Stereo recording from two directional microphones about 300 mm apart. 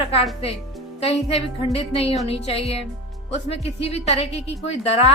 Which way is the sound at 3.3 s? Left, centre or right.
Left.